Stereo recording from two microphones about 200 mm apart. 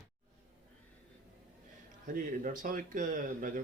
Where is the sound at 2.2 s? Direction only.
40° right (ahead or behind).